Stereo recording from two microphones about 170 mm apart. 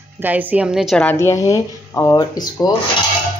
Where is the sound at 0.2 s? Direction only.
10° right (ahead or behind).